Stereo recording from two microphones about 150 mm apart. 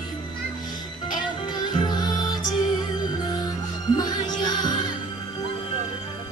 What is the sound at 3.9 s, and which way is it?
Music, 25° left (ahead or behind).